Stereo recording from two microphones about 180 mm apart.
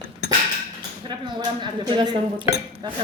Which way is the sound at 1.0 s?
25° right (ahead or behind).